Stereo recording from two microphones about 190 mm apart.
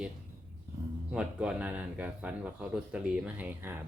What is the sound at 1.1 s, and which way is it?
Speech, 5° right (ahead or behind).